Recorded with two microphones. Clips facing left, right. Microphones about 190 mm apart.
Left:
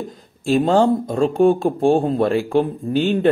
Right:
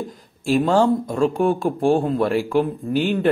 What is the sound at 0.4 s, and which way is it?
Speech, 25° left (ahead or behind).